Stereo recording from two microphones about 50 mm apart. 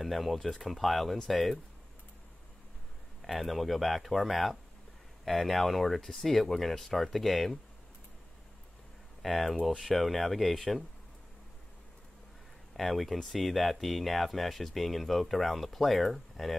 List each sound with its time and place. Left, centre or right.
0.0 s speech: centre
3.2 s speech: centre
9.2 s speech: centre
12.7 s speech: centre